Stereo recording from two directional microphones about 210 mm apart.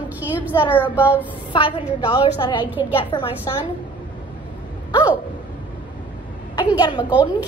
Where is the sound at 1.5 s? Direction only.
25° left (ahead or behind).